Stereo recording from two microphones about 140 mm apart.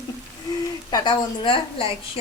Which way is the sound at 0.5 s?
30° left (ahead or behind).